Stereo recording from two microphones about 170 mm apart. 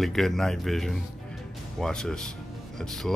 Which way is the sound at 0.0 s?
Centre (ahead or behind).